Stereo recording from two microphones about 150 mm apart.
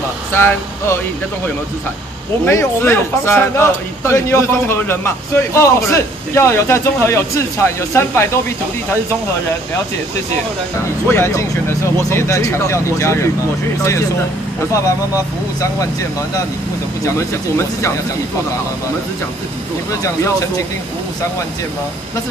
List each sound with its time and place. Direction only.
0.3 s a man's voice: 15° left (ahead or behind)
2.4 s a man's voice: 15° left (ahead or behind)
11.1 s a man's voice: 15° left (ahead or behind)
19.9 s speech: 20° left (ahead or behind)